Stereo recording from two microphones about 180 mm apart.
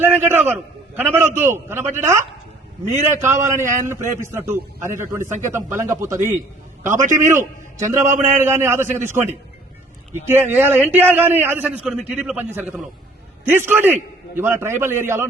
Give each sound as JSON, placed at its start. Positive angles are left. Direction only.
{"t": 0.0, "sound": "a sound", "side_deg": -10}
{"t": 0.5, "sound": "a man's voice", "side_deg": -10}
{"t": 3.2, "sound": "a man's voice", "side_deg": -15}
{"t": 7.9, "sound": "a man's voice", "side_deg": -45}
{"t": 8.2, "sound": "a man's voice", "side_deg": -10}
{"t": 10.2, "sound": "a man's voice", "side_deg": -10}